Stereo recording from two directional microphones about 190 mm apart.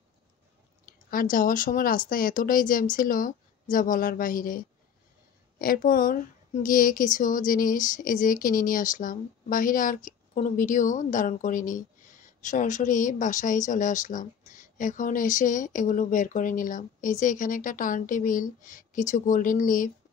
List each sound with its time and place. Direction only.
1.1 s a woman's voice: 45° left (ahead or behind)